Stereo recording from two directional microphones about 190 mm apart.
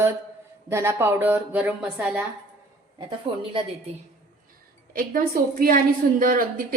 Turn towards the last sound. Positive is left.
turn(degrees=-45)  # may be behind; listen again after turning